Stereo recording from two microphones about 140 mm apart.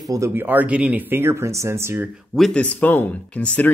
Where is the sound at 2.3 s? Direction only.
5° left (ahead or behind).